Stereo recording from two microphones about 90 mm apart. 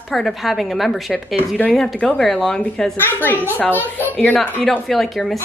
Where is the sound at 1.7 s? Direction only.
5° left (ahead or behind).